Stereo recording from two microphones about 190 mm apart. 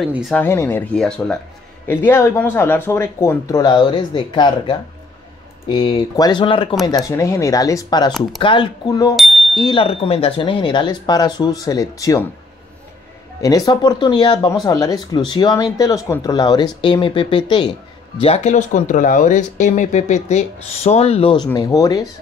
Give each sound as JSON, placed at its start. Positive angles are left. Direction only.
{"t": 0.0, "sound": "speech", "side_deg": 0}
{"t": 9.1, "sound": "speech", "side_deg": 0}
{"t": 9.6, "sound": "speech", "side_deg": 25}
{"t": 13.4, "sound": "speech", "side_deg": 20}
{"t": 18.2, "sound": "speech", "side_deg": 35}